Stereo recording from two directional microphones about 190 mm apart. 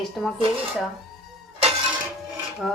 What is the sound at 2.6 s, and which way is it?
Speech, centre (ahead or behind).